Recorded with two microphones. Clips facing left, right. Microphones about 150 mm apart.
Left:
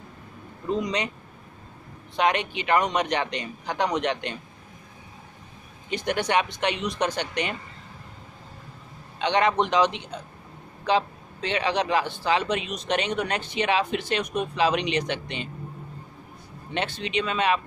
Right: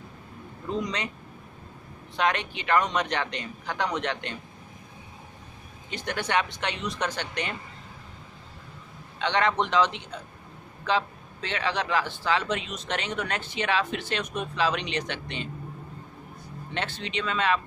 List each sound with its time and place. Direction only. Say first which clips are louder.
0.8 s speech: left 4 dB; 15° left (ahead or behind)
2.1 s speech: left 3 dB; 15° left (ahead or behind)
5.9 s speech: left 5 dB; 15° left (ahead or behind)
9.2 s speech: left 3 dB; 15° left (ahead or behind)
16.7 s speech: left 4 dB; 15° left (ahead or behind)